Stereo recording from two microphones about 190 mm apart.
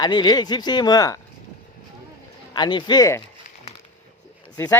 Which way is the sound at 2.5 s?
25° left (ahead or behind).